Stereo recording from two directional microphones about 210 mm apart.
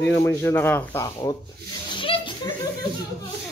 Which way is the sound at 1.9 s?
25° left (ahead or behind).